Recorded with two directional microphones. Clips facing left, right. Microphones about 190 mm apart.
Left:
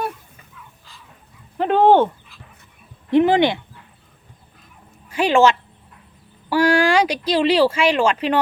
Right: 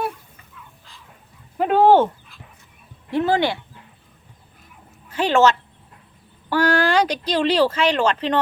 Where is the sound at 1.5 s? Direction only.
5° right (ahead or behind).